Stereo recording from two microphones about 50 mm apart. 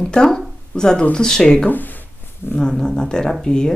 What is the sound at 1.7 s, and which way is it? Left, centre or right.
Speech, left.